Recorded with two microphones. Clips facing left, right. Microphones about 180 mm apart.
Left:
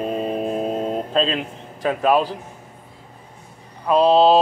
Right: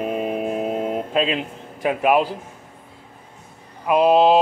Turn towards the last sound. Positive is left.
turn(degrees=-15)  # may be behind; listen again after turning